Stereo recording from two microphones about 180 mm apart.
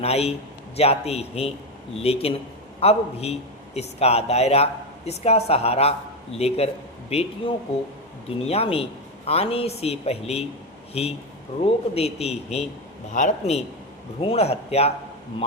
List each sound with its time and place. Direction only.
0.0 s speech: 35° left (ahead or behind)
11.6 s speech: 35° left (ahead or behind)